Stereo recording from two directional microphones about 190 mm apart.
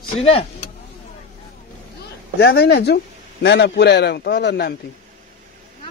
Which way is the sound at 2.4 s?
60° left (ahead or behind).